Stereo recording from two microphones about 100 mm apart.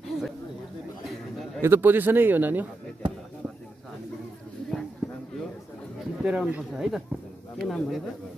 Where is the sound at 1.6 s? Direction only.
20° right (ahead or behind).